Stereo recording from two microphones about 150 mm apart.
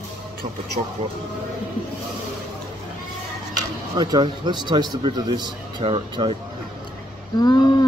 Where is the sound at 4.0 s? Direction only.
30° right (ahead or behind).